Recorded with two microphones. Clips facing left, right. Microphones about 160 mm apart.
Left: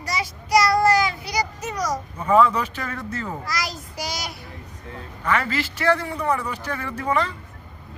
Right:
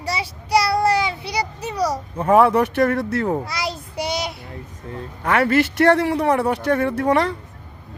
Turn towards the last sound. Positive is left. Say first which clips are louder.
# right 6 dB
turn(degrees=-70)  # may be behind; listen again after turning